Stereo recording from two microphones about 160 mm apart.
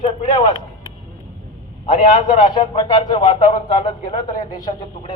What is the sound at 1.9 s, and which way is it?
Speech, 55° left (ahead or behind).